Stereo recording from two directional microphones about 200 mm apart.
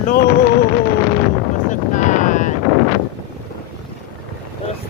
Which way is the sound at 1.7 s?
40° left (ahead or behind).